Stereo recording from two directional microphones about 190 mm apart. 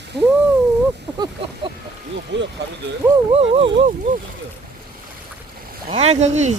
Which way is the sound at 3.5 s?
30° right (ahead or behind).